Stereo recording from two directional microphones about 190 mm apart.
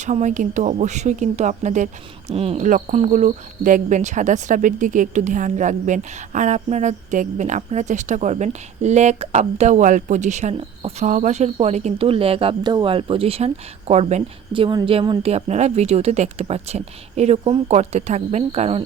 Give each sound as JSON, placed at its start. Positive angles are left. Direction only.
{"t": 0.0, "sound": "speech", "side_deg": -40}